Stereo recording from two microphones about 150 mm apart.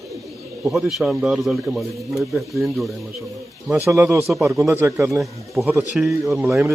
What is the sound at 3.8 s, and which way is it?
Speech, 15° right (ahead or behind).